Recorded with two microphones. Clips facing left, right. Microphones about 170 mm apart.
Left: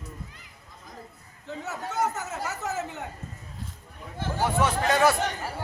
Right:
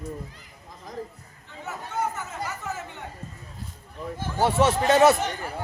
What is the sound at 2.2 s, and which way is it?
Chatter, 75° left (ahead or behind).